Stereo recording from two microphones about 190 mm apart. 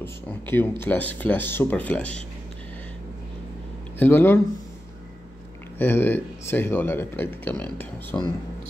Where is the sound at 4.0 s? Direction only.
10° left (ahead or behind).